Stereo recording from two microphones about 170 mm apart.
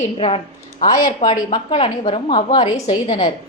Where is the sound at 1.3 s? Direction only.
30° left (ahead or behind).